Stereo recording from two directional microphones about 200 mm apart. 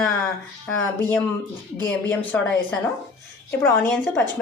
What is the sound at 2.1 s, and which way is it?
A woman's voice, 10° left (ahead or behind).